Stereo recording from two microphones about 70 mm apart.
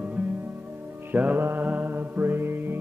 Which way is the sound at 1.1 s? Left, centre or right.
Right.